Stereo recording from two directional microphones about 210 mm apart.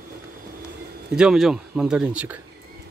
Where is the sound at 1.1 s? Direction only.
5° right (ahead or behind).